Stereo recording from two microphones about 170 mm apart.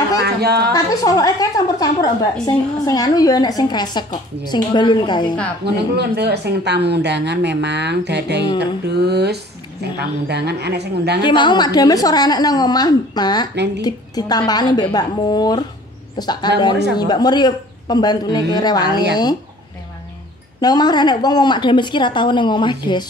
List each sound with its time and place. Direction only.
0.4 s speech: 70° right (ahead or behind)
0.7 s a woman's voice: 20° left (ahead or behind)
5.6 s speech: 80° right
11.2 s a woman's voice: 25° left (ahead or behind)
20.6 s a woman's voice: 25° left (ahead or behind)